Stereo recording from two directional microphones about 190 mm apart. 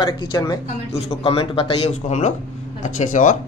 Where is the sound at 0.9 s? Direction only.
35° left (ahead or behind).